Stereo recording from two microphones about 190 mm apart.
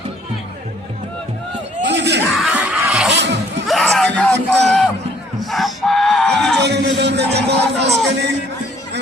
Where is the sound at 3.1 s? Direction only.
65° right (ahead or behind).